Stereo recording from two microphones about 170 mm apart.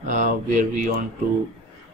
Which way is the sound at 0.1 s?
50° right (ahead or behind).